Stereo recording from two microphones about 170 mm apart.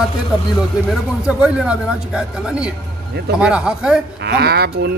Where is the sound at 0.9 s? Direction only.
5° right (ahead or behind).